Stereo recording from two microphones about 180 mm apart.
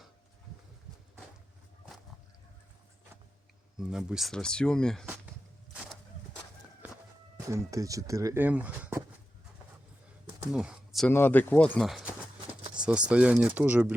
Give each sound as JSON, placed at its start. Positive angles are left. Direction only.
{"t": 3.8, "sound": "speech", "side_deg": -5}
{"t": 7.3, "sound": "speech", "side_deg": -15}
{"t": 10.5, "sound": "speech", "side_deg": -5}
{"t": 11.1, "sound": "speech", "side_deg": 10}